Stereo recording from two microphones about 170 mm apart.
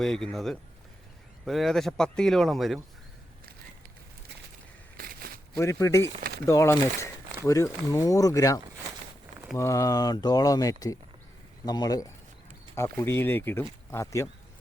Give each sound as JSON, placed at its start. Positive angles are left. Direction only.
{"t": 0.0, "sound": "speech", "side_deg": 5}
{"t": 4.9, "sound": "a sound", "side_deg": -60}
{"t": 5.5, "sound": "speech", "side_deg": 15}